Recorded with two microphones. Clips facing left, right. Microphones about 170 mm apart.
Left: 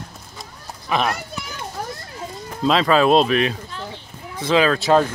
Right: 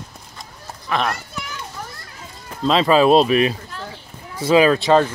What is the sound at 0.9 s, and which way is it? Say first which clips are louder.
Speech: left 1 dB; 10° left (ahead or behind).